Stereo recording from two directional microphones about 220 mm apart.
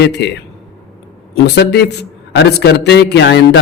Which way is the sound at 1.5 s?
50° left (ahead or behind).